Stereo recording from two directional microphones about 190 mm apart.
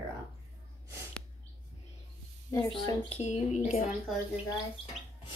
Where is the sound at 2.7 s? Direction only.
25° left (ahead or behind).